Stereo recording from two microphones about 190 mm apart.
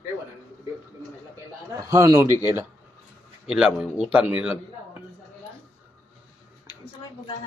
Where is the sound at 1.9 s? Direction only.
15° right (ahead or behind).